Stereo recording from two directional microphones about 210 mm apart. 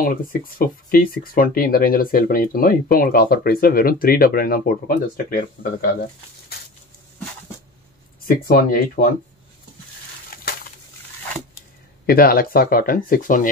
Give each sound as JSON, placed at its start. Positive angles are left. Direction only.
{"t": 0.0, "sound": "speech", "side_deg": 45}
{"t": 8.3, "sound": "speech", "side_deg": 45}
{"t": 12.1, "sound": "speech", "side_deg": 45}